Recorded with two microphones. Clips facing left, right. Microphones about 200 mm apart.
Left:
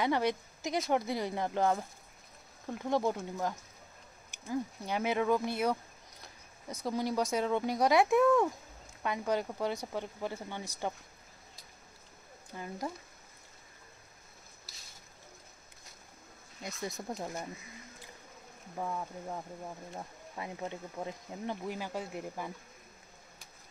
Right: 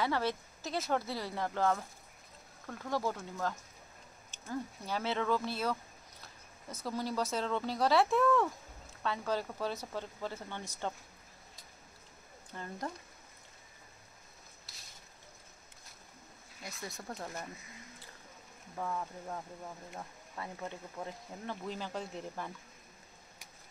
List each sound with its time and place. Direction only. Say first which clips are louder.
0.0 s speech: left 3 dB; 15° left (ahead or behind)
12.5 s speech: left 2 dB; 10° left (ahead or behind)
16.6 s speech: left 5 dB; 20° left (ahead or behind)
18.8 s speech: left 1 dB; 15° left (ahead or behind)